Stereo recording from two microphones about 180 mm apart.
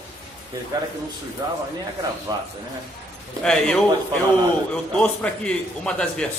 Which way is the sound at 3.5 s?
5° left (ahead or behind).